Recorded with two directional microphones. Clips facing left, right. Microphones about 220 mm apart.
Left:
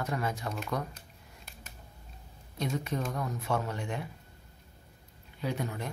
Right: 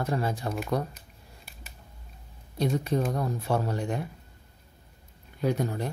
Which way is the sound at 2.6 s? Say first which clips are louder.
Right 6 dB; 35° right (ahead or behind).